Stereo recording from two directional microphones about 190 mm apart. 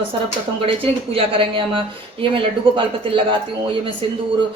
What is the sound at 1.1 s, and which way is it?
A woman's voice, 30° right (ahead or behind).